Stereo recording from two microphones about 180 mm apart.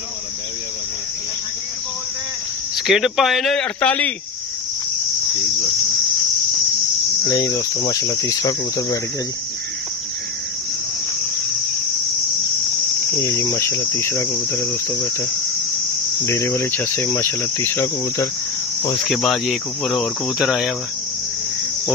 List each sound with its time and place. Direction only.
2.7 s cricket: centre (ahead or behind)
7.2 s cricket: 20° left (ahead or behind)
13.2 s cricket: 15° left (ahead or behind)
16.3 s cricket: 15° left (ahead or behind)
19.0 s cricket: centre (ahead or behind)